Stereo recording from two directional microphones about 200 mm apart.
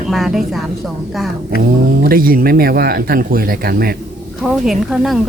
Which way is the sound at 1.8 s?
45° right (ahead or behind).